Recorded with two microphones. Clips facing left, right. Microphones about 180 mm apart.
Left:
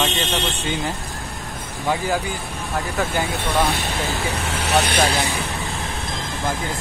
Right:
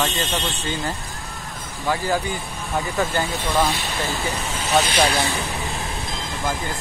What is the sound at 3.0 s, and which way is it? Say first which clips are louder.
Speech: left 1 dB; centre (ahead or behind).